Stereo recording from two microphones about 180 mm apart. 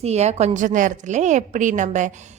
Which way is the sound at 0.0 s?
35° right (ahead or behind).